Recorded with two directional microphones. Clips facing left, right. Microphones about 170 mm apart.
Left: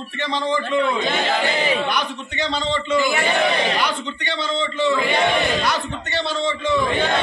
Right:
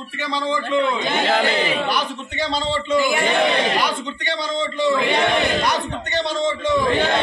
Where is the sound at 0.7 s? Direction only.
15° right (ahead or behind).